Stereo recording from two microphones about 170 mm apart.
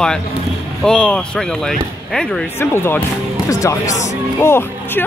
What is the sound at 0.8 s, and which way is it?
Speech, 5° left (ahead or behind).